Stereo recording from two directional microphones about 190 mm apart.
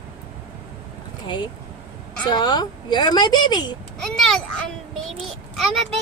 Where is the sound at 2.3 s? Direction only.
20° left (ahead or behind).